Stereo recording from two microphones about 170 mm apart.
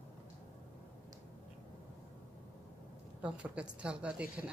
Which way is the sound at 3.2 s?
5° right (ahead or behind).